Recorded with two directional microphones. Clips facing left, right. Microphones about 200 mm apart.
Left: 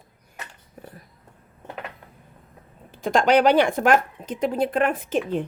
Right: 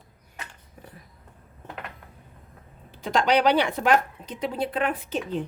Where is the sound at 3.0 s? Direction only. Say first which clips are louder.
Left 4 dB; 50° left (ahead or behind).